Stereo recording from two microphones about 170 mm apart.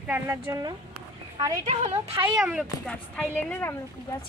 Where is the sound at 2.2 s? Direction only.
5° right (ahead or behind); by 3.7 s 10° left (ahead or behind).